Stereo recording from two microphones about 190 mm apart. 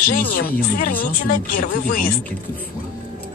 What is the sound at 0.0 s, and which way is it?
Speech, 45° left (ahead or behind).